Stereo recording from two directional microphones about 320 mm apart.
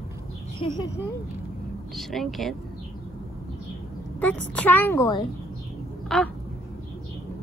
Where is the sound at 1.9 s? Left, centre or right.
Centre.